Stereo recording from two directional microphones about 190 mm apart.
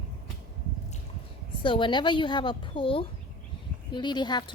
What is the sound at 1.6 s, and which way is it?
A woman's voice, 25° left (ahead or behind).